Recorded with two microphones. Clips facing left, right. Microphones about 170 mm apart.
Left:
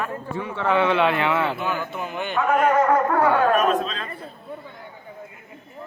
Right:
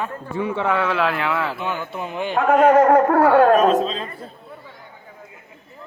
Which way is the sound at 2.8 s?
55° right (ahead or behind).